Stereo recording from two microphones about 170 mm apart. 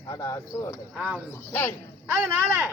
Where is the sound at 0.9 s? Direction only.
5° right (ahead or behind).